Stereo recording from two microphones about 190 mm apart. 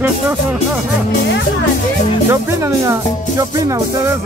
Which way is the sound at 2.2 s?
15° right (ahead or behind).